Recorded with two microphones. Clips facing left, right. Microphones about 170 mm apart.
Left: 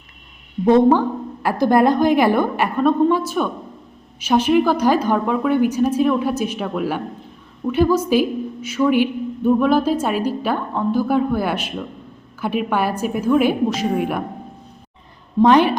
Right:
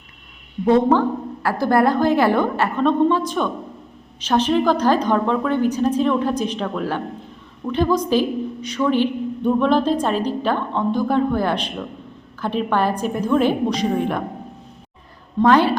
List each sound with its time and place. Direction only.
0.6 s a woman's voice: 15° left (ahead or behind)
15.4 s a woman's voice: 15° left (ahead or behind)